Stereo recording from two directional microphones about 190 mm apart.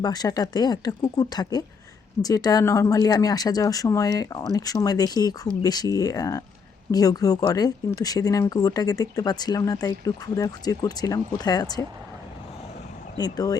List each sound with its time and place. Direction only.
0.0 s speech: 20° left (ahead or behind)
13.1 s speech: 20° left (ahead or behind)